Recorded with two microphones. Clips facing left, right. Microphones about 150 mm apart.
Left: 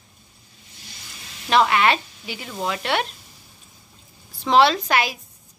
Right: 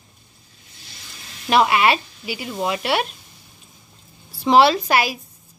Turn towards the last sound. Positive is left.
turn(degrees=-10)  # may be behind; listen again after turning